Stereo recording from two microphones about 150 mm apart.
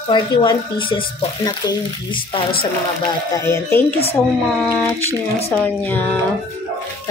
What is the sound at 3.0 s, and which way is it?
Speech, 20° left (ahead or behind).